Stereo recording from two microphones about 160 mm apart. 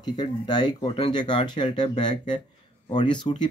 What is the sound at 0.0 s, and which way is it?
Speech, 25° left (ahead or behind).